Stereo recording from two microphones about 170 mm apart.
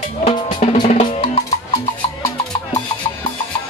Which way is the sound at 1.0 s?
35° left (ahead or behind).